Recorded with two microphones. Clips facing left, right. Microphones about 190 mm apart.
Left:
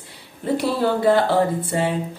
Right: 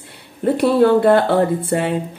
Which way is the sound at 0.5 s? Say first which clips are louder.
Right 8 dB; 60° right (ahead or behind).